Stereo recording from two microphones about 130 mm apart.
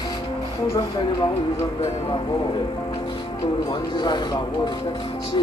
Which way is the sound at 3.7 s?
35° left (ahead or behind).